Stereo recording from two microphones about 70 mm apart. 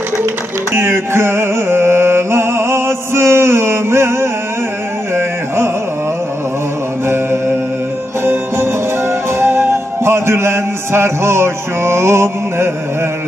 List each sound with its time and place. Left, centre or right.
0.7 s music: right
9.4 s music: right